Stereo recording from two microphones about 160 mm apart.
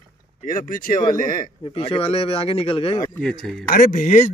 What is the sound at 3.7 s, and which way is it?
Speech, 55° left (ahead or behind).